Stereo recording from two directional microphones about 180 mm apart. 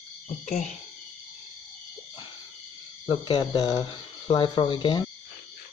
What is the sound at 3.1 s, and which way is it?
Speech, 30° left (ahead or behind).